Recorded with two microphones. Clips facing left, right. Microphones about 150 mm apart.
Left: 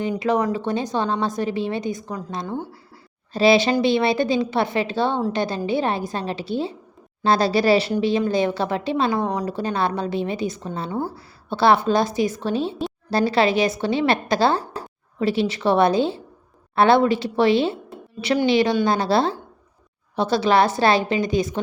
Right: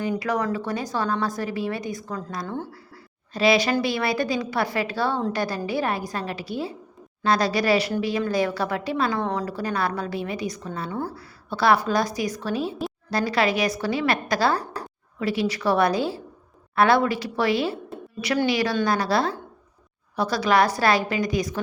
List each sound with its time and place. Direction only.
0.2 s a woman's voice: 20° left (ahead or behind)